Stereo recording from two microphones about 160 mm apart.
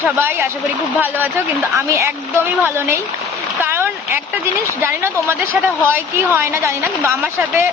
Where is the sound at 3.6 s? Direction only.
15° right (ahead or behind).